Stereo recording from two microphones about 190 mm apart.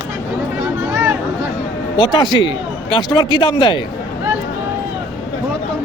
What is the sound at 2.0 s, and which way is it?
A man's voice, 20° left (ahead or behind).